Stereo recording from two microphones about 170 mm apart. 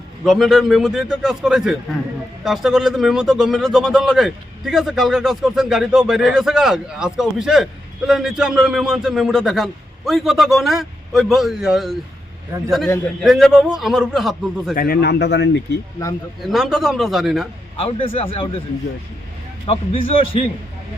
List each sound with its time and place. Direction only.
0.3 s speech: centre (ahead or behind)
13.2 s speech: centre (ahead or behind)
14.8 s speech: 65° left (ahead or behind); by 15.8 s 90° left
16.4 s speech: centre (ahead or behind)
17.7 s a man's voice: 35° left (ahead or behind)
19.6 s a man's voice: 35° left (ahead or behind)